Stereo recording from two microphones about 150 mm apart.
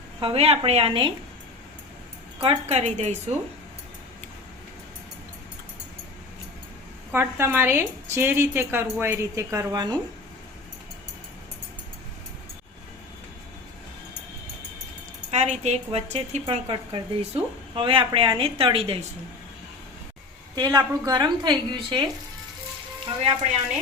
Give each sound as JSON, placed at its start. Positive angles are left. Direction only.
{"t": 0.2, "sound": "a woman's voice", "side_deg": -40}
{"t": 2.4, "sound": "a woman's voice", "side_deg": -40}
{"t": 7.1, "sound": "a woman's voice", "side_deg": -15}
{"t": 15.3, "sound": "a woman's voice", "side_deg": -50}
{"t": 20.6, "sound": "a woman's voice", "side_deg": -25}